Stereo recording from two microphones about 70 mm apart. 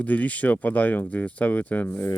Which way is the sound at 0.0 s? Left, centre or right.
Left.